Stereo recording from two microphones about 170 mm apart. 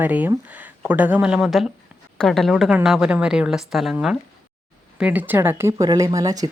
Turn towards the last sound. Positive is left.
turn(degrees=-20)  # may be behind; listen again after turning